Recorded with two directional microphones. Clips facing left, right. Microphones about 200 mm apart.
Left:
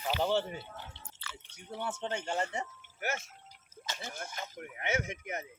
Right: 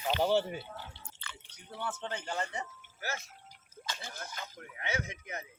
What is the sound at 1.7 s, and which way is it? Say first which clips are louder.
Speech: left 2 dB; 20° left (ahead or behind).